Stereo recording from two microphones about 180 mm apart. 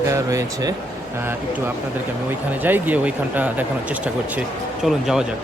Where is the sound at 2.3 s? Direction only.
10° right (ahead or behind).